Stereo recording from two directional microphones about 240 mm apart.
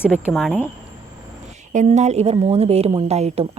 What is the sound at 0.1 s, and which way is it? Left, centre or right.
Speech, centre.